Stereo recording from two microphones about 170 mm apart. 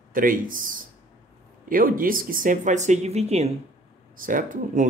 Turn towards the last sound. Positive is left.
turn(degrees=-50)  # may be behind; listen again after turning